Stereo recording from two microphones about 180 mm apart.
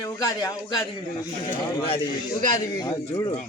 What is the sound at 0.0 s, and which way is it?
Speech, 20° left (ahead or behind).